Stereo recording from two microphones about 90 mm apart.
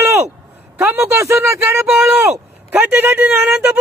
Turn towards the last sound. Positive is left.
turn(degrees=-15)  # may be behind; listen again after turning